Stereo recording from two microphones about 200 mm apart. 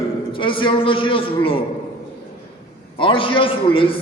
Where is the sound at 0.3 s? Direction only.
25° left (ahead or behind).